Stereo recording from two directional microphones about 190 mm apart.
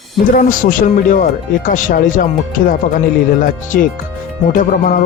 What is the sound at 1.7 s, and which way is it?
Speech, 45° left (ahead or behind).